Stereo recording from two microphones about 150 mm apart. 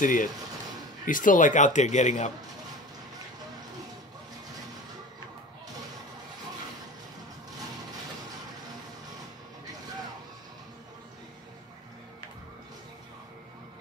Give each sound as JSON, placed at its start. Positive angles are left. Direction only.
{"t": 0.0, "sound": "a man's voice", "side_deg": 60}